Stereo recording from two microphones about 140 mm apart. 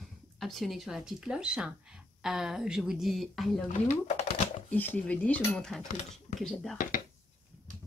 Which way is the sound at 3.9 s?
50° left (ahead or behind).